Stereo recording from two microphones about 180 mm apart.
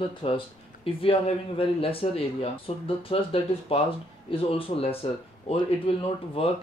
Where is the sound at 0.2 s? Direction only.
30° left (ahead or behind).